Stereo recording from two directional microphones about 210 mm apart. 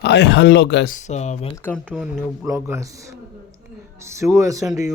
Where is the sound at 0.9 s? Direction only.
35° left (ahead or behind).